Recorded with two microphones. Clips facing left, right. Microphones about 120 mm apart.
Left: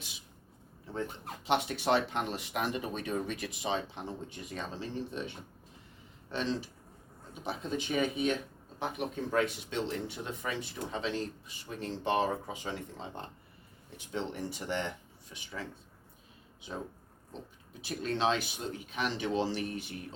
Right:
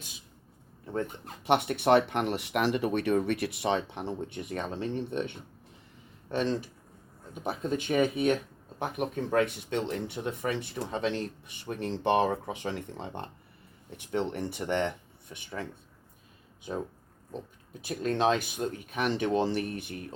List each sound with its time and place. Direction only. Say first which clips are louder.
1.5 s speech: right 5 dB; 60° right (ahead or behind)
17.7 s speech: right 4 dB; 50° right (ahead or behind)